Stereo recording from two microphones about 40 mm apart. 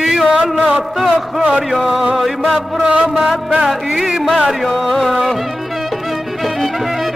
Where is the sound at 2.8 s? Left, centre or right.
Right.